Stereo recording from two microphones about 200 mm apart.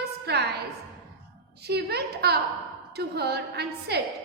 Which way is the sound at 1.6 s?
55° right (ahead or behind).